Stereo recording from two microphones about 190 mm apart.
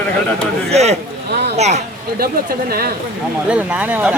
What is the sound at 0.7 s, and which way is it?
Speech, 35° right (ahead or behind).